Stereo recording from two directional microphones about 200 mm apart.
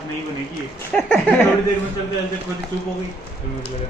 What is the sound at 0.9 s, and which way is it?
Speech, 5° left (ahead or behind).